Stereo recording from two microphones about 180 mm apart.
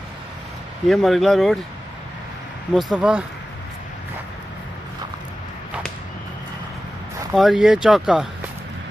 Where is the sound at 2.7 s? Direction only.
Centre (ahead or behind).